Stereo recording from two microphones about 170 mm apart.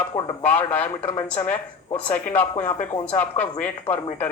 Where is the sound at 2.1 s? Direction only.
10° left (ahead or behind).